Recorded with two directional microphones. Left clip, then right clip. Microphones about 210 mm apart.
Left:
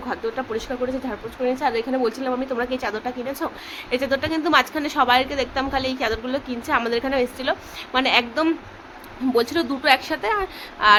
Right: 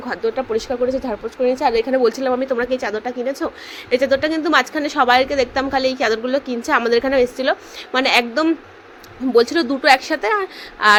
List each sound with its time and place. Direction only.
0.1 s speech: 25° right (ahead or behind)